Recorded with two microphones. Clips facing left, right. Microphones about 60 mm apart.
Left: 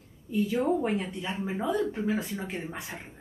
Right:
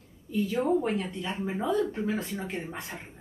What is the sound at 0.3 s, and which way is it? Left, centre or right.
A woman's voice, centre.